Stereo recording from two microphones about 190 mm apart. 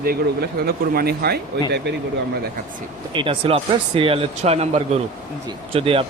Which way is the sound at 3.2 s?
30° right (ahead or behind).